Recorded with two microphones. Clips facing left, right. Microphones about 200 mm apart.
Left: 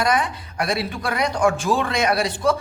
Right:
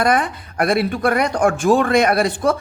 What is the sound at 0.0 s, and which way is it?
A woman's voice, 55° right (ahead or behind).